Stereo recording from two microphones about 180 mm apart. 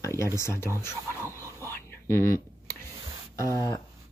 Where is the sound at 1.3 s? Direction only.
15° right (ahead or behind).